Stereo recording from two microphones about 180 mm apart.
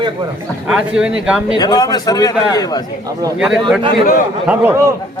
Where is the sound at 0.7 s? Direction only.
5° right (ahead or behind).